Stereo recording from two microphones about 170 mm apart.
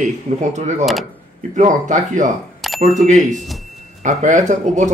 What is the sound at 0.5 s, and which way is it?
Speech, 45° right (ahead or behind).